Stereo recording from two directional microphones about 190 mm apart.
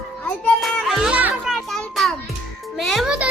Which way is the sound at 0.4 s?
Centre (ahead or behind).